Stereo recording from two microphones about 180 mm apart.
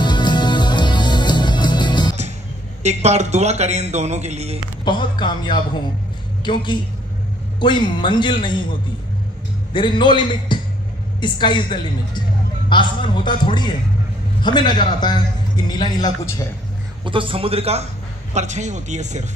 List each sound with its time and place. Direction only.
0.0 s music: 25° left (ahead or behind)
2.8 s speech: 40° right (ahead or behind)
4.8 s a man's voice: 25° left (ahead or behind)
9.8 s a man's voice: 25° left (ahead or behind)
17.0 s speech: 30° right (ahead or behind)